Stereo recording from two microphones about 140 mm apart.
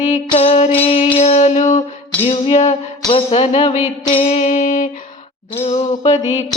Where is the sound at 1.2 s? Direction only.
55° left (ahead or behind).